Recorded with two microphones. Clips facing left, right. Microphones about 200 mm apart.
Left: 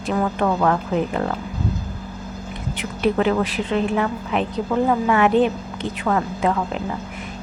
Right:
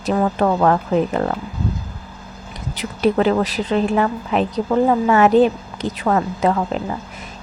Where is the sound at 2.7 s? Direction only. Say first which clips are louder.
Right 3 dB; 35° right (ahead or behind).